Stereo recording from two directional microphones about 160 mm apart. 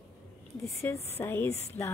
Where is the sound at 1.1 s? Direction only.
15° left (ahead or behind).